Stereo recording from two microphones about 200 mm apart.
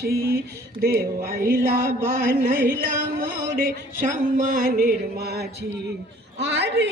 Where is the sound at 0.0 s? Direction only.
50° right (ahead or behind).